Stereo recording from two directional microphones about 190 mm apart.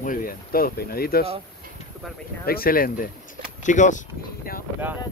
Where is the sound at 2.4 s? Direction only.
50° left (ahead or behind).